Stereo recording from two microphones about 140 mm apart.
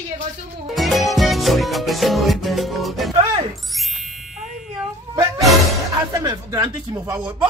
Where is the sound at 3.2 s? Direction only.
40° right (ahead or behind).